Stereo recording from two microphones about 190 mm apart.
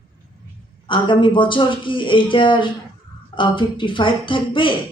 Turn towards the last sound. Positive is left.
turn(degrees=25)  # may be behind; listen again after turning